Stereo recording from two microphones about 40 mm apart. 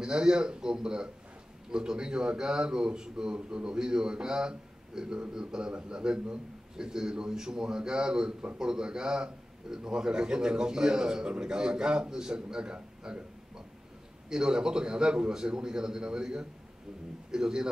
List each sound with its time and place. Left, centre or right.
0.0 s a man's voice: centre
14.3 s a man's voice: centre